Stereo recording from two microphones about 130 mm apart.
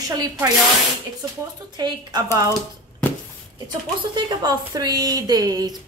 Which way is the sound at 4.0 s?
35° right (ahead or behind).